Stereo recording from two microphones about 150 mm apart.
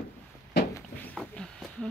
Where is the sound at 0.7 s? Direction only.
10° left (ahead or behind).